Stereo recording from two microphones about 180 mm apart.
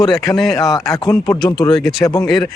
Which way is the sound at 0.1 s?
Centre (ahead or behind).